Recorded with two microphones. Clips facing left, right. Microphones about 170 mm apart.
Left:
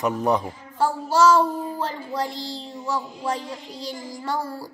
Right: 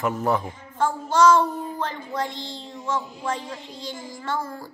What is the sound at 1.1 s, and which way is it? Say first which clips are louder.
Child singing: even; 10° left (ahead or behind).